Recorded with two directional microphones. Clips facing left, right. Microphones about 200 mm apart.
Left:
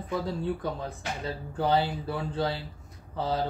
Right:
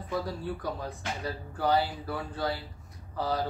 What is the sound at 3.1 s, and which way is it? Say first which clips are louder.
Speech: left 1 dB; 25° left (ahead or behind).